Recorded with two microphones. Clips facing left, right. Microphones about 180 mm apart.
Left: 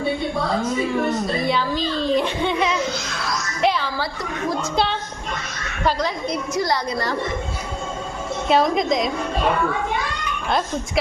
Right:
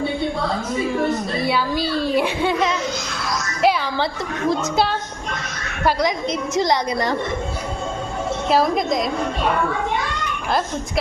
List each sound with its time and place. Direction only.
1.5 s a child's voice: 10° right (ahead or behind)
6.5 s a woman's voice: 20° right (ahead or behind)
8.4 s a woman's voice: centre (ahead or behind)